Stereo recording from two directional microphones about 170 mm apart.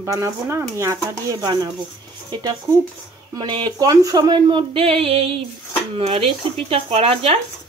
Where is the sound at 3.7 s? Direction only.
20° right (ahead or behind).